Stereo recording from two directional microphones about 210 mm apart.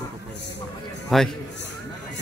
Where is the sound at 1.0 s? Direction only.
Centre (ahead or behind).